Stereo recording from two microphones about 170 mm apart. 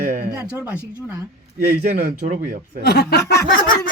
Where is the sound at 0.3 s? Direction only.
15° right (ahead or behind).